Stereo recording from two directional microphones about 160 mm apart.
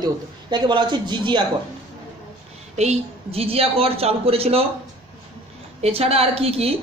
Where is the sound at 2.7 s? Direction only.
45° right (ahead or behind).